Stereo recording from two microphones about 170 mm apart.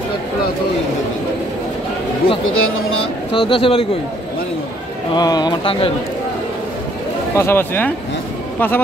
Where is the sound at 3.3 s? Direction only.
30° left (ahead or behind).